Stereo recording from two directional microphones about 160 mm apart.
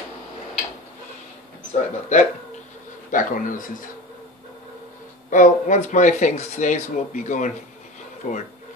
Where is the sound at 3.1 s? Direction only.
55° left (ahead or behind).